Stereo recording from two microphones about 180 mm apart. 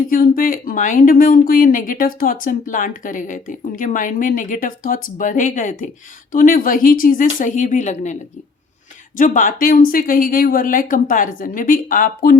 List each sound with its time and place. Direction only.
0.1 s speech: 50° left (ahead or behind)